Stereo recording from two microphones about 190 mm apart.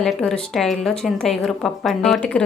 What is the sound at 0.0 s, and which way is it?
A woman's voice, 5° left (ahead or behind).